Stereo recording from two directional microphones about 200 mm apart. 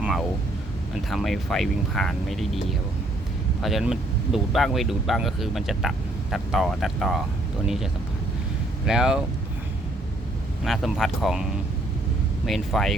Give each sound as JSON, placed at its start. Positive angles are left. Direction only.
{"t": 0.0, "sound": "a sound", "side_deg": 0}
{"t": 1.1, "sound": "speech", "side_deg": 0}
{"t": 3.6, "sound": "speech", "side_deg": 0}
{"t": 8.9, "sound": "speech", "side_deg": -5}
{"t": 10.6, "sound": "speech", "side_deg": 0}
{"t": 12.5, "sound": "speech", "side_deg": 0}